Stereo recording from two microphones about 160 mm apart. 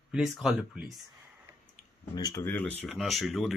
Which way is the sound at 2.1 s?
25° left (ahead or behind).